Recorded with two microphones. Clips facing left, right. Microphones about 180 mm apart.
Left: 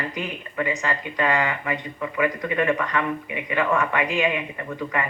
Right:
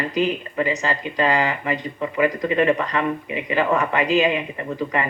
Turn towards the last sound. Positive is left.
turn(degrees=-25)  # may be behind; listen again after turning